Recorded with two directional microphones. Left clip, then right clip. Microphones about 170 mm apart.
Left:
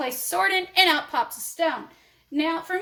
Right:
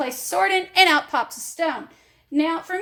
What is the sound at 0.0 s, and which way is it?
A woman's voice, 35° right (ahead or behind).